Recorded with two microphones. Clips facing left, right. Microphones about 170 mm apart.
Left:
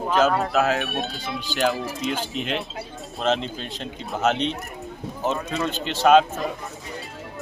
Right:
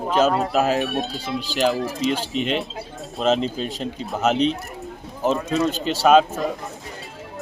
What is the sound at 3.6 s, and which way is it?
Speech, 40° right (ahead or behind).